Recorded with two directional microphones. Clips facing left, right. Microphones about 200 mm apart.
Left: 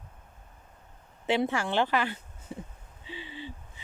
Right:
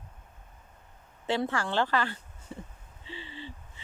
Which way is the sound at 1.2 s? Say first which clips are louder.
Left 2 dB; 20° left (ahead or behind).